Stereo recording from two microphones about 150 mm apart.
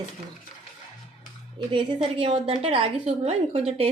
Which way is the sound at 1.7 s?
35° right (ahead or behind).